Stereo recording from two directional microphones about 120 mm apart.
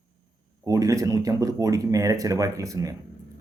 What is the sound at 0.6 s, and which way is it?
Speech, 25° right (ahead or behind).